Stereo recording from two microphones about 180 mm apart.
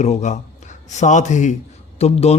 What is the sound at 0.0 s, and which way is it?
A man's voice, 40° left (ahead or behind).